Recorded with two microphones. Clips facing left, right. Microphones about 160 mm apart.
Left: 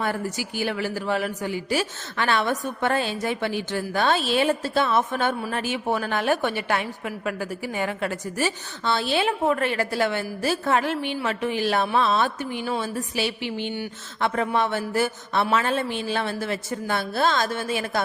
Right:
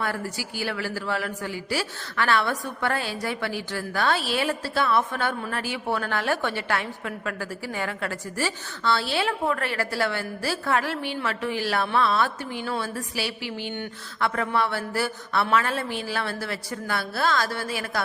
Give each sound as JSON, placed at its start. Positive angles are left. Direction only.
{"t": 0.0, "sound": "a woman's voice", "side_deg": 20}